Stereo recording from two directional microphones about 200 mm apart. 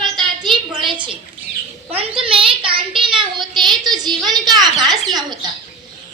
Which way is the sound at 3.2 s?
20° right (ahead or behind).